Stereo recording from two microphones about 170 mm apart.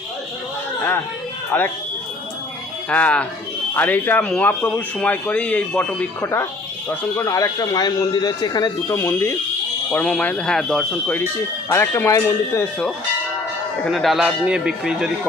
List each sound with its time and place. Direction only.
1.5 s speech: 10° left (ahead or behind)
2.9 s speech: 5° left (ahead or behind)
11.7 s speech: 15° left (ahead or behind)
13.8 s speech: centre (ahead or behind)